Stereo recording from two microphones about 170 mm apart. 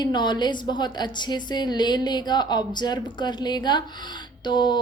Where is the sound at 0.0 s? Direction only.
25° left (ahead or behind).